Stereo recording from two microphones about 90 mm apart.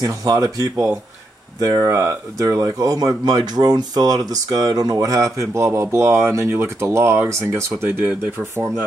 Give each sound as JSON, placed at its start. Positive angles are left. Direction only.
{"t": 0.0, "sound": "speech", "side_deg": -45}